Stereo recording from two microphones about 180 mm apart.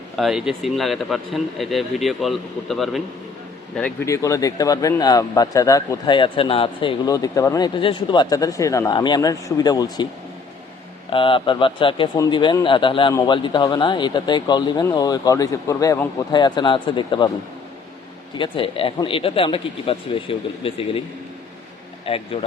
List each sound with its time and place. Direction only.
0.2 s a man's voice: centre (ahead or behind)
4.0 s speech: 15° left (ahead or behind)
11.1 s speech: 30° left (ahead or behind)
18.3 s speech: 30° left (ahead or behind)
22.0 s speech: 30° left (ahead or behind)